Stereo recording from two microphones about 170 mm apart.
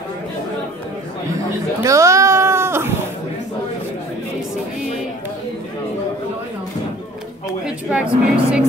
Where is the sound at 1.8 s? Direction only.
20° right (ahead or behind).